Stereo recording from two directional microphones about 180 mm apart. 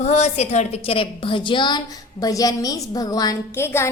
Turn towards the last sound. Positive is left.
turn(degrees=15)  # may be behind; listen again after turning